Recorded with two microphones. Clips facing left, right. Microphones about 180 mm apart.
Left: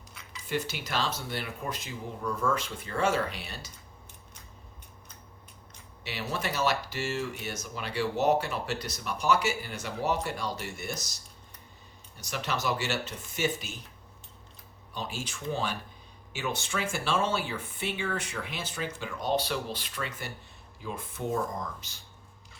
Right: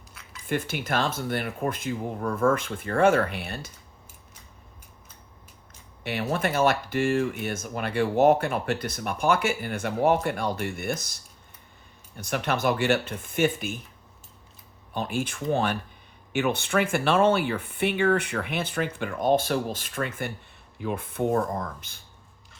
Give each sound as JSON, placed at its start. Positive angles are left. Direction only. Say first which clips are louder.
{"t": 0.1, "sound": "cutlery", "louder": "even", "side_deg": 0}
{"t": 0.4, "sound": "speech", "louder": "right 4 dB", "side_deg": -55}
{"t": 6.0, "sound": "speech", "louder": "right 7 dB", "side_deg": -55}
{"t": 14.9, "sound": "speech", "louder": "right 8 dB", "side_deg": -55}